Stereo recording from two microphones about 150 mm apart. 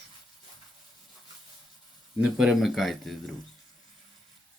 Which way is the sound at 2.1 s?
5° right (ahead or behind).